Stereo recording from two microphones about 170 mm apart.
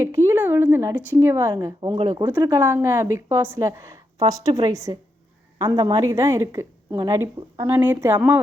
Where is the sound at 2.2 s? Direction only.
15° right (ahead or behind).